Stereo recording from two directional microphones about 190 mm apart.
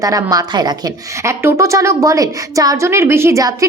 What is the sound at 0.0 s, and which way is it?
A woman's voice, 20° right (ahead or behind).